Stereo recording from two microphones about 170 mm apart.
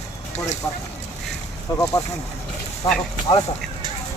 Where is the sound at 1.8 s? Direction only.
20° left (ahead or behind).